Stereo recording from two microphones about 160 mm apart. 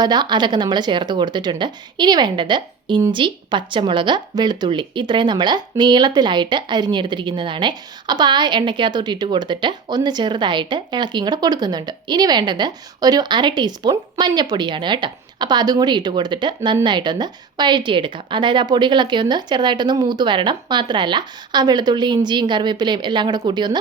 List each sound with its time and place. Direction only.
0.0 s speech: 25° right (ahead or behind)